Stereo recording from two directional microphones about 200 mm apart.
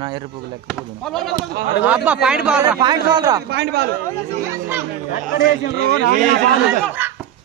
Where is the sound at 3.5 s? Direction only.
55° right (ahead or behind).